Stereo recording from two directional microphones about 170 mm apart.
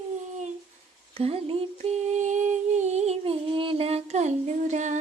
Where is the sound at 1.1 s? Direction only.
35° right (ahead or behind).